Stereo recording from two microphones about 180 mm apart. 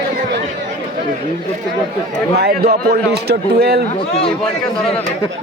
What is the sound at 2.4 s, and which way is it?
Speech, 60° right (ahead or behind).